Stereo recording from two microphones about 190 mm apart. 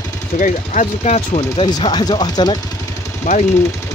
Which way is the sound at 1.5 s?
25° left (ahead or behind).